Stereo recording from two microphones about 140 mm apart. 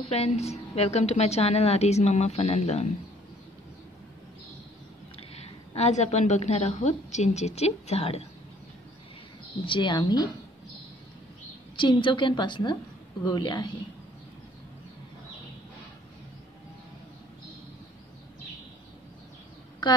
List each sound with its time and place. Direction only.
0.1 s a woman's voice: 50° left (ahead or behind)
5.3 s a woman's voice: 50° left (ahead or behind)
9.7 s a woman's voice: 35° left (ahead or behind)
11.7 s a woman's voice: 35° left (ahead or behind)
19.8 s a woman's voice: 30° left (ahead or behind)